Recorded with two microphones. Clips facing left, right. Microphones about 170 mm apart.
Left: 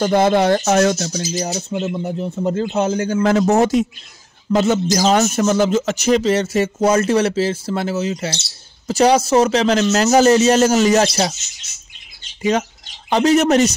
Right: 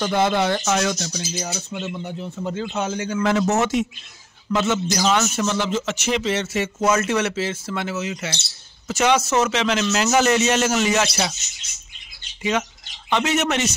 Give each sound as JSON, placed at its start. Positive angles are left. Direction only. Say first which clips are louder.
{"t": 0.0, "sound": "speech", "louder": "left 6 dB", "side_deg": 40}
{"t": 13.1, "sound": "speech", "louder": "left 8 dB", "side_deg": 35}